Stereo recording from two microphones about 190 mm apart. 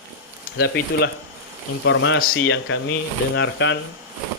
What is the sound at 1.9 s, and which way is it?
Speech, 80° left.